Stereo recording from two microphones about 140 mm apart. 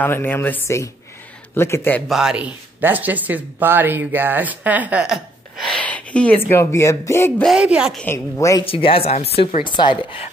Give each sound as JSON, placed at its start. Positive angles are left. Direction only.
{"t": 0.0, "sound": "speech", "side_deg": 15}
{"t": 2.0, "sound": "speech", "side_deg": -5}
{"t": 7.4, "sound": "speech", "side_deg": -5}
{"t": 8.1, "sound": "speech", "side_deg": 20}
{"t": 8.6, "sound": "a woman's voice", "side_deg": 40}